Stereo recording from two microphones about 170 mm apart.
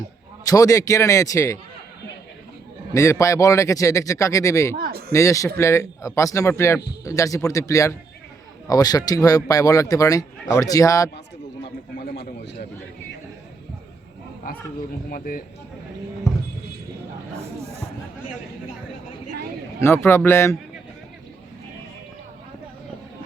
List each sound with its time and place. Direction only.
0.4 s speech: 20° left (ahead or behind)
2.9 s speech: 20° left (ahead or behind)
4.8 s speech: 65° right (ahead or behind)
5.1 s a man's voice: 20° left (ahead or behind)
11.9 s a sound: 70° left (ahead or behind)
15.1 s speech: 55° left (ahead or behind)
16.3 s music: 15° left (ahead or behind)
19.8 s a man's voice: 15° left (ahead or behind)